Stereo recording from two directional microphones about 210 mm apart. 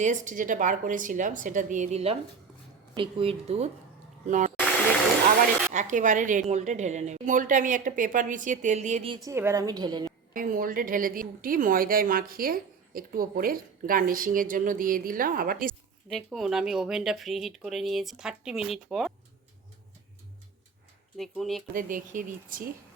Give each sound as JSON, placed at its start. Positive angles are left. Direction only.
{"t": 0.0, "sound": "a woman's voice", "side_deg": -35}
{"t": 5.7, "sound": "a woman's voice", "side_deg": -35}
{"t": 9.3, "sound": "a woman's voice", "side_deg": -10}
{"t": 10.3, "sound": "a woman's voice", "side_deg": -40}
{"t": 16.0, "sound": "speech", "side_deg": 0}
{"t": 21.2, "sound": "speech", "side_deg": 0}
{"t": 21.7, "sound": "a woman's voice", "side_deg": -40}